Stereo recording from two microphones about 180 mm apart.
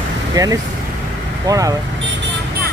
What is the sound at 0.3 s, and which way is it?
Speech, 20° right (ahead or behind).